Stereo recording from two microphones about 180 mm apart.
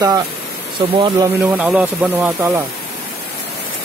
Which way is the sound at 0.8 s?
25° right (ahead or behind).